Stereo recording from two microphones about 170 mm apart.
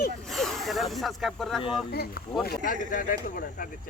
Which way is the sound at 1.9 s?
70° left (ahead or behind).